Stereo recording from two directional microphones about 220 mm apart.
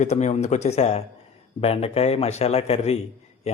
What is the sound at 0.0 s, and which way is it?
Speech, 30° left (ahead or behind).